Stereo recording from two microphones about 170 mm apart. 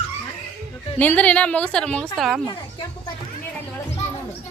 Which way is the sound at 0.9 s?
10° left (ahead or behind).